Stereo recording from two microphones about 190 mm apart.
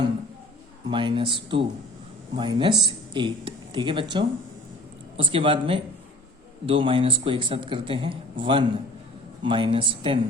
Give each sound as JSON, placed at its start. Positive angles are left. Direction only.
{"t": 0.9, "sound": "speech", "side_deg": -25}